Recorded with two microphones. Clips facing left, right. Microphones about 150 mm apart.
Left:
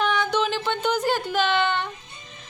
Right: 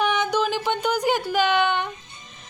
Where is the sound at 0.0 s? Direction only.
15° right (ahead or behind).